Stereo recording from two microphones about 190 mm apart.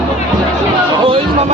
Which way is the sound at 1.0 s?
30° right (ahead or behind).